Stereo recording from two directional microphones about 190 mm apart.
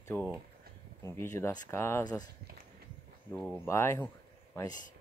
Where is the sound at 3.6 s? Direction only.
15° left (ahead or behind).